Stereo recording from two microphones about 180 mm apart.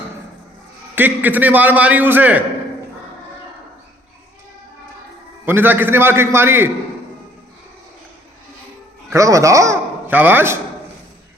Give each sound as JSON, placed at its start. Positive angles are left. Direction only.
{"t": 0.9, "sound": "a man's voice", "side_deg": -10}
{"t": 5.5, "sound": "a man's voice", "side_deg": -10}
{"t": 9.1, "sound": "a man's voice", "side_deg": -15}